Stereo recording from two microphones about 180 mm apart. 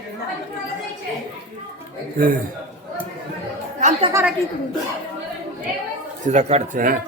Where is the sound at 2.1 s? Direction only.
50° right (ahead or behind).